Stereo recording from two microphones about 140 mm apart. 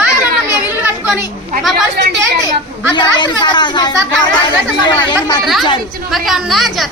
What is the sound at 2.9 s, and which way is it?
A woman's voice, 30° left (ahead or behind).